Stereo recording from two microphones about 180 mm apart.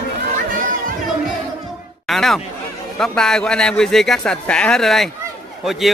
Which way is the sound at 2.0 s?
Centre (ahead or behind).